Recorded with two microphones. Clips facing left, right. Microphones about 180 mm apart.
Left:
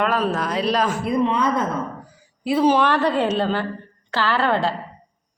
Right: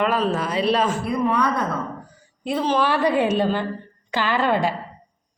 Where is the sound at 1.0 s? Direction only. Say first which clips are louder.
Left 1 dB; 20° left (ahead or behind).